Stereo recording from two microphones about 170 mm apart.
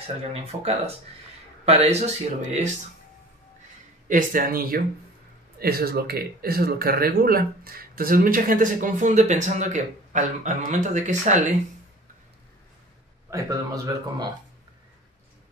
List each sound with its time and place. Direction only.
0.0 s speech: 35° right (ahead or behind)
4.1 s speech: 55° right (ahead or behind)
13.3 s a man's voice: 20° right (ahead or behind)